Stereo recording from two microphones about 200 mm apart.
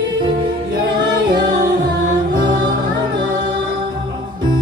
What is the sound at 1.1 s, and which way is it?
Music, 20° right (ahead or behind).